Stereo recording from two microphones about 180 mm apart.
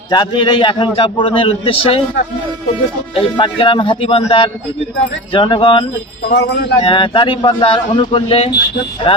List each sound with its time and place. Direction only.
0.1 s a man's voice: 25° left (ahead or behind)
3.2 s a man's voice: 30° left (ahead or behind)
6.3 s speech: 70° left (ahead or behind)
6.8 s a man's voice: 30° left (ahead or behind)